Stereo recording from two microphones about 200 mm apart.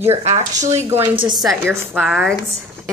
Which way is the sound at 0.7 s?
15° right (ahead or behind).